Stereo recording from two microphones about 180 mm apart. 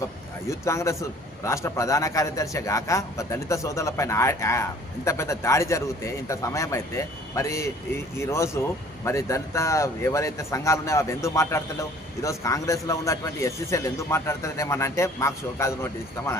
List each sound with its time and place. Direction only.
0.5 s a man's voice: 15° left (ahead or behind)